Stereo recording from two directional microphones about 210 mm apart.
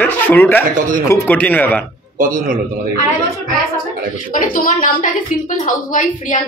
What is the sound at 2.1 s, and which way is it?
Speech, 40° right (ahead or behind).